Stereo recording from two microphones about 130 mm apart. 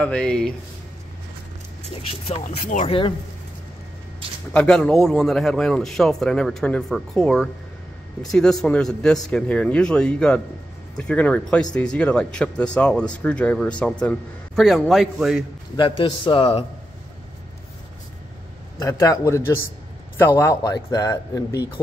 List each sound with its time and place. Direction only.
0.0 s a man's voice: 5° left (ahead or behind)
2.4 s speech: 75° left (ahead or behind)
2.9 s speech: 45° left (ahead or behind)
4.5 s a man's voice: 5° left (ahead or behind)
15.7 s a man's voice: 40° left (ahead or behind)
18.8 s speech: 25° left (ahead or behind)